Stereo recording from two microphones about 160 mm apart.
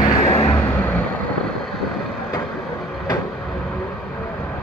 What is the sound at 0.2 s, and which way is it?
Vehicle, 40° left (ahead or behind).